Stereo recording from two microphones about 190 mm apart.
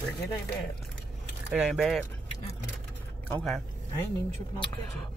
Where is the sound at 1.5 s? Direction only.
5° right (ahead or behind).